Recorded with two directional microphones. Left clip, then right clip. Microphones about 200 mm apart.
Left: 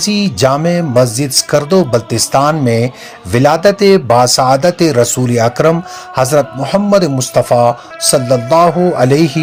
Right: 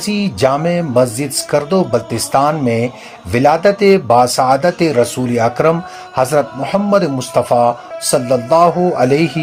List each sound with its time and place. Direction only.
0.0 s speech: 25° left (ahead or behind)